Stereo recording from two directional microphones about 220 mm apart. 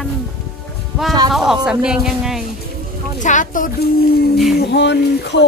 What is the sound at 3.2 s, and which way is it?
Speech, 35° left (ahead or behind).